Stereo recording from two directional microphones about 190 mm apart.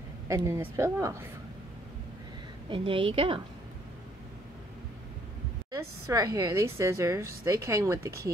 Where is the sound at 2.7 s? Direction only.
25° right (ahead or behind).